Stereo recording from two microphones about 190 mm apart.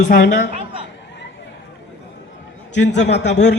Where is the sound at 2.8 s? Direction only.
65° left (ahead or behind).